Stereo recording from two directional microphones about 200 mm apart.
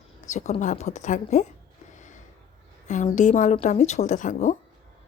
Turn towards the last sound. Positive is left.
turn(degrees=40)  # may be behind; listen again after turning